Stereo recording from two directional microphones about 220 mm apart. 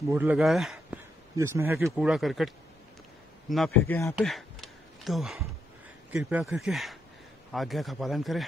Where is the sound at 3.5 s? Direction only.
Centre (ahead or behind).